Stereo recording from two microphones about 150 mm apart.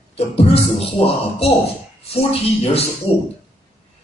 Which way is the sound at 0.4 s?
40° left (ahead or behind).